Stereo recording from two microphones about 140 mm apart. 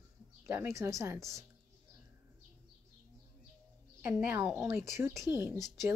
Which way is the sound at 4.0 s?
15° right (ahead or behind).